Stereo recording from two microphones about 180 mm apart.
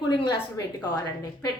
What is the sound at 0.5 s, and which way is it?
Speech, 20° left (ahead or behind).